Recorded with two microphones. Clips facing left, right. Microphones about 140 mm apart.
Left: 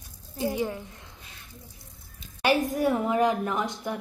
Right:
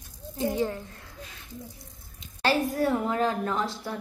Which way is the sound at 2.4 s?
15° left (ahead or behind).